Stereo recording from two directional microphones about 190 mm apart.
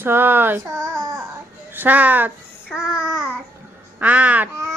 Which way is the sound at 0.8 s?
15° right (ahead or behind).